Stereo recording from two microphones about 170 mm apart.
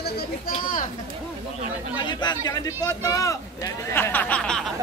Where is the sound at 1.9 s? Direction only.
25° left (ahead or behind); by 4.6 s 5° left (ahead or behind).